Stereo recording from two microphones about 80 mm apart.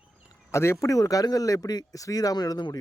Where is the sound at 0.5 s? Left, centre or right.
Left.